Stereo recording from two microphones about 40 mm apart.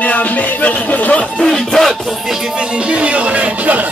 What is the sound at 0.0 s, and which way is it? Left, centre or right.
Music, left.